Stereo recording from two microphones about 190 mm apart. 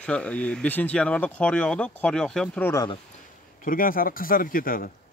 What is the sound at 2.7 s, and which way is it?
Speech, 20° left (ahead or behind).